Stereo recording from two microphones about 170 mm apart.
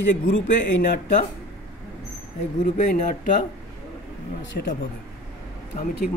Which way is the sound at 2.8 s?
50° left (ahead or behind).